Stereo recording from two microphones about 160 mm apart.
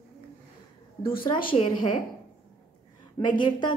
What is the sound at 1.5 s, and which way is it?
Speech, 30° left (ahead or behind).